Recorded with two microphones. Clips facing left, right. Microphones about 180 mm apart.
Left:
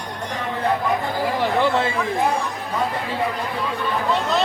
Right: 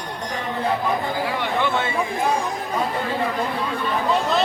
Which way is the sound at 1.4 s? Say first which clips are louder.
Left 5 dB; 35° left (ahead or behind).